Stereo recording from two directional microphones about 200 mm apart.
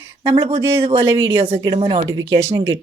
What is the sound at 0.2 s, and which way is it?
Speech, 30° right (ahead or behind).